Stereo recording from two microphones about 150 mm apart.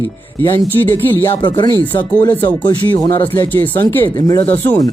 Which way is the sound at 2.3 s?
10° left (ahead or behind).